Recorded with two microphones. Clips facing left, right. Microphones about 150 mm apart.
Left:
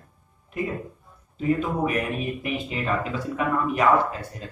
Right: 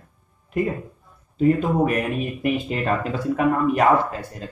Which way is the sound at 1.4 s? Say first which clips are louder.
Right 5 dB; 50° right (ahead or behind).